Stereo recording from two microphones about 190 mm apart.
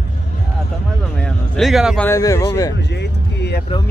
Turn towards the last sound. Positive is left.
turn(degrees=65)  # may be behind; listen again after turning